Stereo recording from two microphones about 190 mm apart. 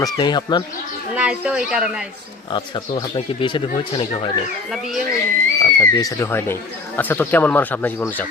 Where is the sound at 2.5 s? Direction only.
25° left (ahead or behind).